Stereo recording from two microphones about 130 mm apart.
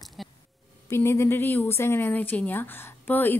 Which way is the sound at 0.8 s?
20° left (ahead or behind).